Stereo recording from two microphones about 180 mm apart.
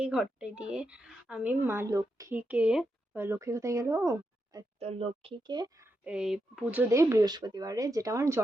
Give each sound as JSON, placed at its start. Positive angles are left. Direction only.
{"t": 0.0, "sound": "a woman's voice", "side_deg": -5}
{"t": 4.8, "sound": "speech", "side_deg": -35}
{"t": 6.1, "sound": "a woman's voice", "side_deg": -5}